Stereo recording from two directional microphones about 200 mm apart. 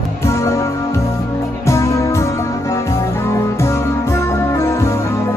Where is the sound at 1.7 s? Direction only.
15° left (ahead or behind).